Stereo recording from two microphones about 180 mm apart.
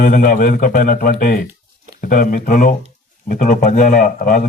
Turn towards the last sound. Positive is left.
turn(degrees=50)  # may be behind; listen again after turning